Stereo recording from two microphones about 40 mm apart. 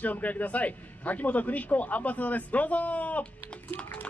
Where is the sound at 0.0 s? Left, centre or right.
Left.